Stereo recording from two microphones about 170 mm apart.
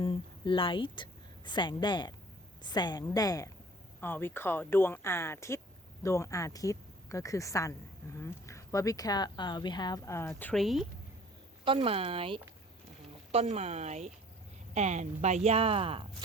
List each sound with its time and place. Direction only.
0.0 s a woman's voice: 30° left (ahead or behind); by 10.5 s 15° left (ahead or behind)
10.5 s speech: centre (ahead or behind)
11.6 s speech: 35° right (ahead or behind)